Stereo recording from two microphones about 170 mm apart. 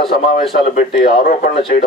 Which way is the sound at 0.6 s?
45° left (ahead or behind).